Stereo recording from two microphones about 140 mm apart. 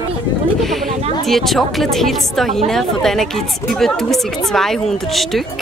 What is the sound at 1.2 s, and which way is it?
A woman's voice, centre (ahead or behind).